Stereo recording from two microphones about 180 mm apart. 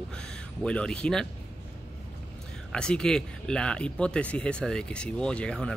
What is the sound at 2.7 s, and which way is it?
Speech, 5° left (ahead or behind).